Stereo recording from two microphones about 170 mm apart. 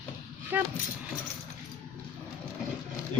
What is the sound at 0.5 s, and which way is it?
Speech, 10° right (ahead or behind).